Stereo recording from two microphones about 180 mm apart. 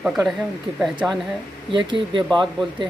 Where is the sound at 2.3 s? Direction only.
5° left (ahead or behind).